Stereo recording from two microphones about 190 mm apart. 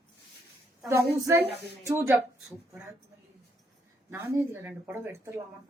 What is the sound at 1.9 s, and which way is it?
Speech, 15° right (ahead or behind).